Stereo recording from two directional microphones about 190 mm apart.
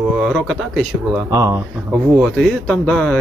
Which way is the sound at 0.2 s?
Centre (ahead or behind).